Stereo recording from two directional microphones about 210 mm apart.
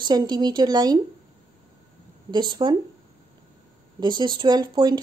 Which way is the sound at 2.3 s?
20° right (ahead or behind).